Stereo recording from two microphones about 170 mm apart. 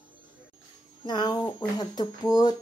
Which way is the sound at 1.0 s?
25° left (ahead or behind).